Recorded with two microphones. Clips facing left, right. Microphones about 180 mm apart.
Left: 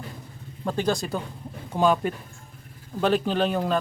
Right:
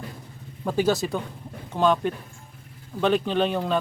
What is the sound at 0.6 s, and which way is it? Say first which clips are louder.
Speech: right 3 dB; 5° right (ahead or behind).